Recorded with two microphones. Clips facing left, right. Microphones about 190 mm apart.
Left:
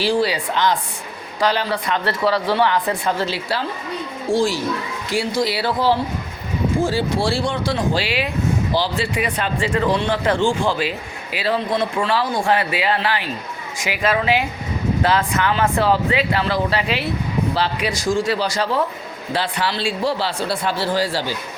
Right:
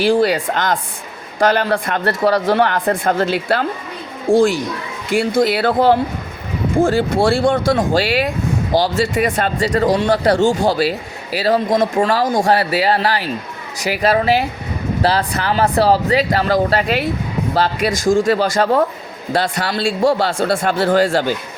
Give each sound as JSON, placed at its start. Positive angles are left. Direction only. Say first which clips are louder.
{"t": 0.0, "sound": "speech", "louder": "right 5 dB", "side_deg": -55}